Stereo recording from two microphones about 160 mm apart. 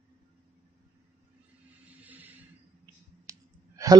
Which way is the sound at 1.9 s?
10° right (ahead or behind).